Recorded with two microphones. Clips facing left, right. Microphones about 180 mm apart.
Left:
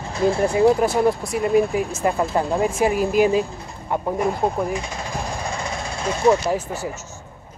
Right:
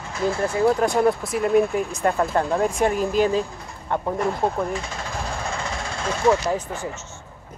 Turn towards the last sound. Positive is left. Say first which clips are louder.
# left 2 dB
turn(degrees=10)  # may be behind; listen again after turning